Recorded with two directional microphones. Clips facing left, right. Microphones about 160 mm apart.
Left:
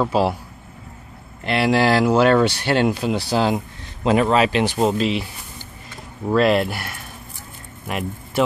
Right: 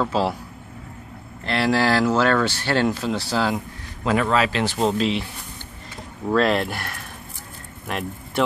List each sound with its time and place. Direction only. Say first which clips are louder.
0.0 s speech: left 3 dB; 10° left (ahead or behind)
1.4 s speech: left 3 dB; 15° left (ahead or behind)
4.7 s speech: left 2 dB; 5° left (ahead or behind)
6.2 s speech: left 3 dB; 5° left (ahead or behind)